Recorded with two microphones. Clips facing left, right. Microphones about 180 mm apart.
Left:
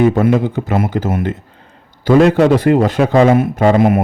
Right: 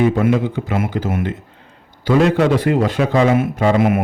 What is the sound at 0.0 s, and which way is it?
A man's voice, 40° left (ahead or behind).